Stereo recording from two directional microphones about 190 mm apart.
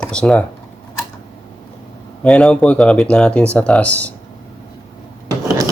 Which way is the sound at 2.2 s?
5° left (ahead or behind).